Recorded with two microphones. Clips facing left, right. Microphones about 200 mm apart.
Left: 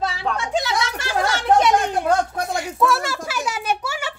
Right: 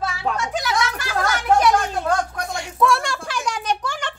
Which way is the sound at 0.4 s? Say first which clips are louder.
Left 2 dB; 25° left (ahead or behind).